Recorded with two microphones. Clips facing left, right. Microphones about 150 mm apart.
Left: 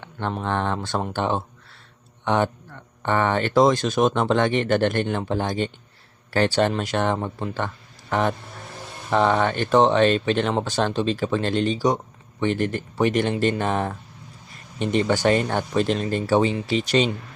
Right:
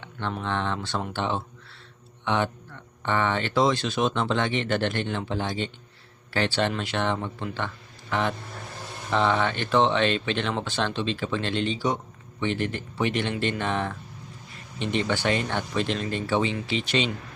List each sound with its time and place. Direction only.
0.0 s speech: 45° left (ahead or behind)